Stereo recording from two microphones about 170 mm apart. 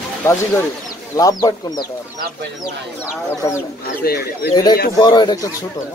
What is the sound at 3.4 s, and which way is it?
Speech, 20° left (ahead or behind).